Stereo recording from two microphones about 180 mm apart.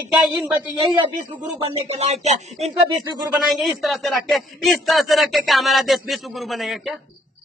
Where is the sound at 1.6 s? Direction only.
35° right (ahead or behind).